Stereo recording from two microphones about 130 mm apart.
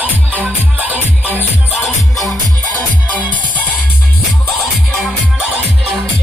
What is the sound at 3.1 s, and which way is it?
Music, 10° left (ahead or behind).